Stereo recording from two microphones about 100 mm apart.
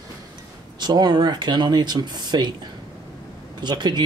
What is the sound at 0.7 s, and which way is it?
Speech, 45° right (ahead or behind).